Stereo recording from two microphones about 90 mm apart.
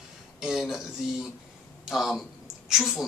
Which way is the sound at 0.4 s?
5° right (ahead or behind).